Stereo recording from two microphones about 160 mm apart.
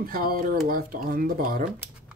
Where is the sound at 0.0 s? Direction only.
65° right (ahead or behind).